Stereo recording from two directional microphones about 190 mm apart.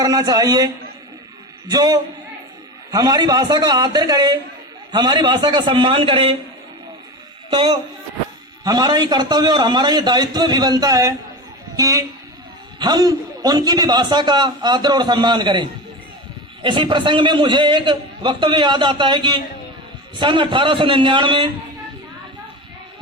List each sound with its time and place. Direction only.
0.0 s a man's voice: 20° right (ahead or behind)
1.7 s a man's voice: 20° right (ahead or behind)
7.5 s a man's voice: 25° right (ahead or behind)